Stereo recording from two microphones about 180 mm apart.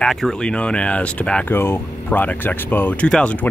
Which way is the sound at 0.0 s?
Centre (ahead or behind).